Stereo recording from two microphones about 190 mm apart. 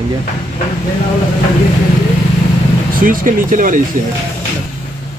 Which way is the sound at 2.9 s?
45° right (ahead or behind).